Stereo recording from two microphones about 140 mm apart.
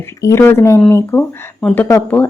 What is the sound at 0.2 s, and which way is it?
A woman's voice, 20° left (ahead or behind).